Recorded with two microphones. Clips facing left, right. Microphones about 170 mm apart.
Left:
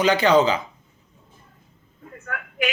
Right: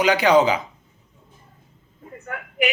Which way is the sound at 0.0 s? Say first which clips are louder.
Right 1 dB; 10° right (ahead or behind).